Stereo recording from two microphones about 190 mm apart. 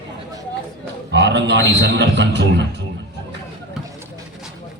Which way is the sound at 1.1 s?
70° right (ahead or behind).